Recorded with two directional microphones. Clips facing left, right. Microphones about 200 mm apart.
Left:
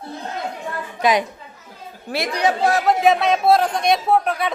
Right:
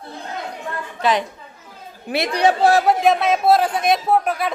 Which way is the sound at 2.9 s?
Centre (ahead or behind).